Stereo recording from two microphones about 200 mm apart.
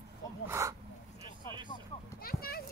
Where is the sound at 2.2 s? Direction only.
50° left (ahead or behind).